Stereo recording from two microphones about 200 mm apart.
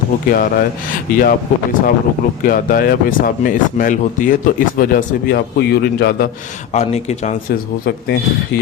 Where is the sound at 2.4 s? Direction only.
45° left (ahead or behind).